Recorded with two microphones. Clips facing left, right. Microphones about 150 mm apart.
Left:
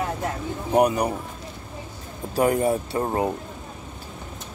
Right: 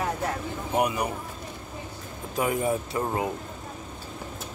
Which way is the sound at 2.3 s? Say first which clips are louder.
Left 5 dB; 35° left (ahead or behind).